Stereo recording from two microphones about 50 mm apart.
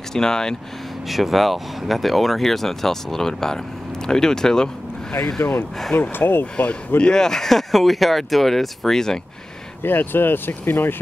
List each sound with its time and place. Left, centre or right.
0.1 s speech: centre
1.0 s speech: centre
5.9 s speech: left
6.4 s speech: left
9.8 s speech: left